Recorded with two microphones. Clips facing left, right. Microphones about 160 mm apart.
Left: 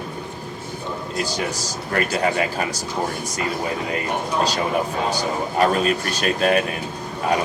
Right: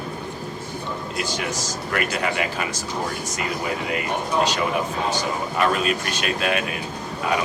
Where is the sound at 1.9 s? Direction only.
35° left (ahead or behind).